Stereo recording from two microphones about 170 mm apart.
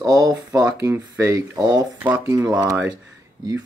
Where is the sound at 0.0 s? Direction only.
25° right (ahead or behind).